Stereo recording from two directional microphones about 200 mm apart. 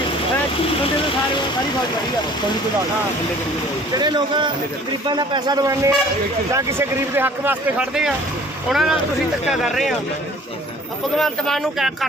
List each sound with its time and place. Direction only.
3.9 s speech: 20° right (ahead or behind); by 9.9 s centre (ahead or behind)
11.2 s speech: centre (ahead or behind)